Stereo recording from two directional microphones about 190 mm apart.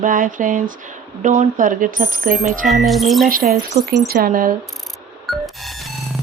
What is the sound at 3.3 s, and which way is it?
Speech, 50° right (ahead or behind).